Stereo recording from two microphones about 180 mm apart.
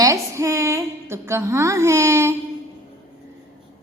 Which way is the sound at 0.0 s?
15° right (ahead or behind).